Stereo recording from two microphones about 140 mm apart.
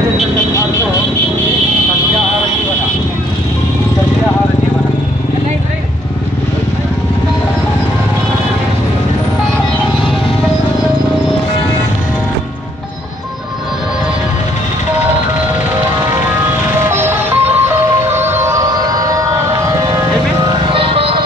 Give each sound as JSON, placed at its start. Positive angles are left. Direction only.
{"t": 16.9, "sound": "music", "side_deg": -15}
{"t": 18.0, "sound": "siren", "side_deg": -15}
{"t": 20.6, "sound": "music", "side_deg": -40}